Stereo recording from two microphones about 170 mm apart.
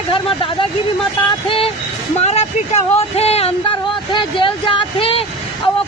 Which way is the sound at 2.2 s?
40° left (ahead or behind).